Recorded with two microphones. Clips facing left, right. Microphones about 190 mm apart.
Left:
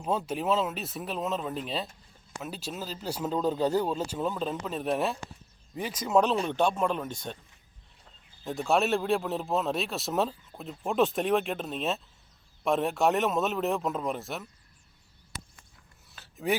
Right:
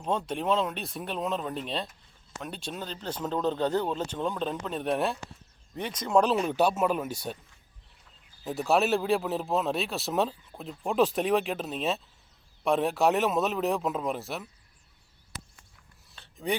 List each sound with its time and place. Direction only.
0.0 s speech: 5° left (ahead or behind)
8.4 s speech: centre (ahead or behind)
16.1 s a sound: 5° left (ahead or behind)